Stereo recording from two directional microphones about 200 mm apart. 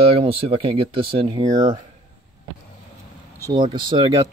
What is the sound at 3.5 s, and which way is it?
Speech, 25° right (ahead or behind).